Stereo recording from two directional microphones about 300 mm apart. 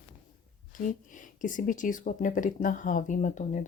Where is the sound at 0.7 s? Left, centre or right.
Left.